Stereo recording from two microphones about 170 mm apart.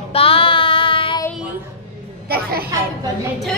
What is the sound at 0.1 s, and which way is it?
Child singing, 35° left (ahead or behind).